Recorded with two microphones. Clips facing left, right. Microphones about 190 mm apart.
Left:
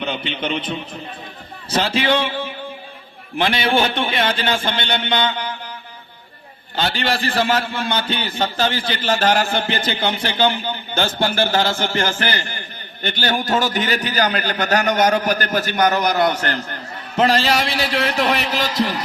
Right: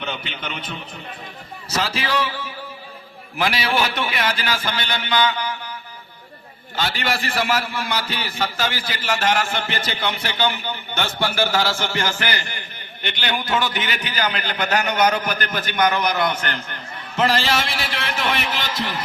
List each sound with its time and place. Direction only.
0.0 s a man's voice: 30° left (ahead or behind)
6.7 s a man's voice: 30° left (ahead or behind)
11.9 s a man's voice: 50° left (ahead or behind)